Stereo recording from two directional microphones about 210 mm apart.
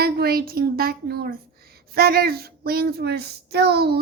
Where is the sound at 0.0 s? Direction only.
50° right (ahead or behind).